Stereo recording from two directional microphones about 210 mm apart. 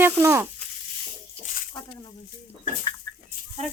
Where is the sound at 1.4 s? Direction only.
40° left (ahead or behind).